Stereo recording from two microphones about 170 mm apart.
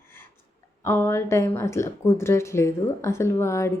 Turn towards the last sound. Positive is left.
turn(degrees=15)  # may be behind; listen again after turning